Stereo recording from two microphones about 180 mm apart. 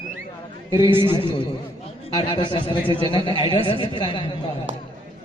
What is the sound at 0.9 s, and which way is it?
Speech, 10° right (ahead or behind).